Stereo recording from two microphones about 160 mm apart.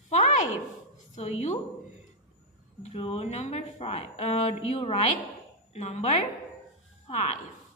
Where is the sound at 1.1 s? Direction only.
45° left (ahead or behind).